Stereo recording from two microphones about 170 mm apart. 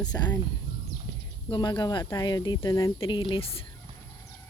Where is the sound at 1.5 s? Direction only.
25° left (ahead or behind).